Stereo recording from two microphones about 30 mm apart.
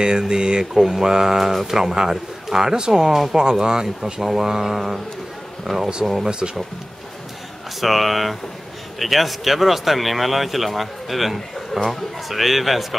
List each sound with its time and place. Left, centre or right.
0.3 s speech: right; by 5.0 s centre
5.7 s speech: right
6.4 s speech: centre
7.8 s speech: centre